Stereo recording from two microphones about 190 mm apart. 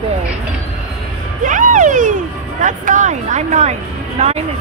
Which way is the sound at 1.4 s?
45° right (ahead or behind).